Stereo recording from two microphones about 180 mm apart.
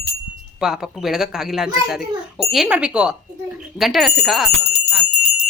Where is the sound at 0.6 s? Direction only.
5° right (ahead or behind).